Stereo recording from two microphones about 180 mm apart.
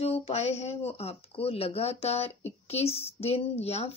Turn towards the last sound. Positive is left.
turn(degrees=35)  # may be behind; listen again after turning